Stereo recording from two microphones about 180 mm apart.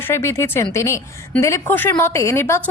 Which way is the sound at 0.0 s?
15° left (ahead or behind).